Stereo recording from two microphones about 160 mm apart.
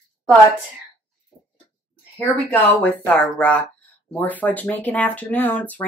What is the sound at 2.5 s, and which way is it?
Speech, 10° left (ahead or behind).